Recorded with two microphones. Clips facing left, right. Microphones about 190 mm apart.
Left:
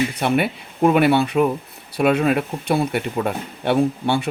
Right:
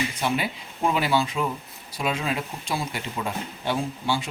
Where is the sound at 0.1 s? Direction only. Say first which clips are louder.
Left 7 dB; 65° left (ahead or behind).